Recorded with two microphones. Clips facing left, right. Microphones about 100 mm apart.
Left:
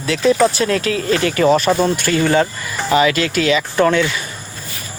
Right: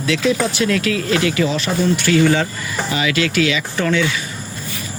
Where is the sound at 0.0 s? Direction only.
40° left (ahead or behind).